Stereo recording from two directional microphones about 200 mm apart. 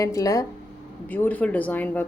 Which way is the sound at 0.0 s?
15° left (ahead or behind).